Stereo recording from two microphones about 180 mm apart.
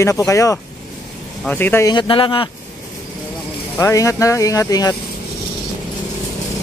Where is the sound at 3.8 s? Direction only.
15° left (ahead or behind).